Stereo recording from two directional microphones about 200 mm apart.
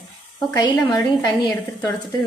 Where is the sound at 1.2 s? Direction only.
20° left (ahead or behind).